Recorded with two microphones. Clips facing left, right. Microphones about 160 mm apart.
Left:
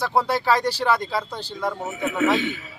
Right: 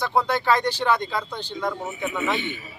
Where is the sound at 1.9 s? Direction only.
90° left.